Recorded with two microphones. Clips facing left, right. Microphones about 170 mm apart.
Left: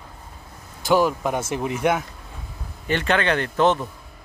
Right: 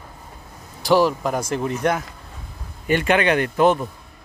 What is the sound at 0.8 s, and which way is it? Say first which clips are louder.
Speech: right 2 dB; centre (ahead or behind).